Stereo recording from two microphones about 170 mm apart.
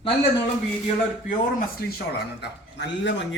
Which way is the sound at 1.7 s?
65° left (ahead or behind).